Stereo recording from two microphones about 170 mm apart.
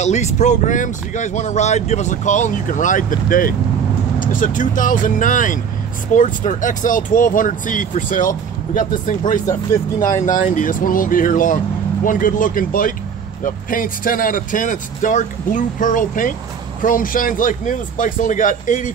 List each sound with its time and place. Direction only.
0.0 s speech: 45° left (ahead or behind)